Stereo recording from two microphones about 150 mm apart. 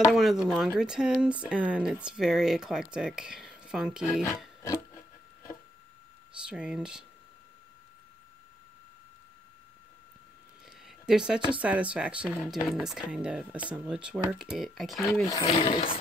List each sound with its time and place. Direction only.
0.1 s speech: centre (ahead or behind)
6.5 s speech: 5° right (ahead or behind)
10.9 s speech: 5° right (ahead or behind)
15.0 s speech: 20° left (ahead or behind)
15.4 s speech: 40° left (ahead or behind)